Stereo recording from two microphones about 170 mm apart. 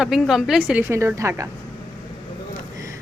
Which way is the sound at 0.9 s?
15° right (ahead or behind).